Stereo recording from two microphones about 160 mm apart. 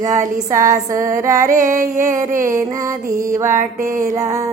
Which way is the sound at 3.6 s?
55° right (ahead or behind).